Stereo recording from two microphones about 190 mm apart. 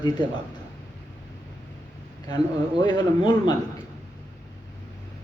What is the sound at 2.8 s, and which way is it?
Speech, 20° left (ahead or behind).